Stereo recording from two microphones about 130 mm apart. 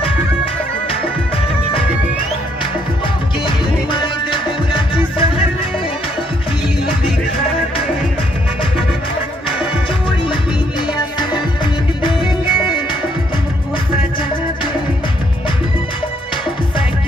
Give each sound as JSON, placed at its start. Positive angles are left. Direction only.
{"t": 3.4, "sound": "music", "side_deg": 40}